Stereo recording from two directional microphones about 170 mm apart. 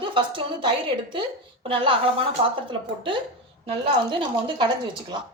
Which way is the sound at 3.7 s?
30° right (ahead or behind).